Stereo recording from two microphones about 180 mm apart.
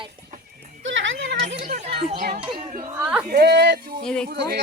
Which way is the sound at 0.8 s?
90° right.